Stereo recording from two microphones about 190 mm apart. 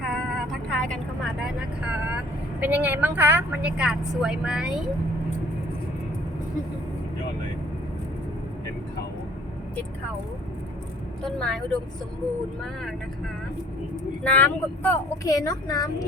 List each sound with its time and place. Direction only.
0.1 s speech: centre (ahead or behind)
11.2 s a woman's voice: 5° left (ahead or behind)
14.3 s speech: 10° left (ahead or behind)